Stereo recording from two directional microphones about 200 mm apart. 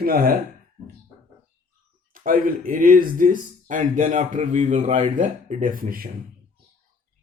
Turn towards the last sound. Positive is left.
turn(degrees=-45)  # may be behind; listen again after turning